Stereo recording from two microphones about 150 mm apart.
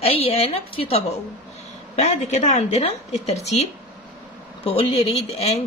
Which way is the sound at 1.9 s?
50° left (ahead or behind).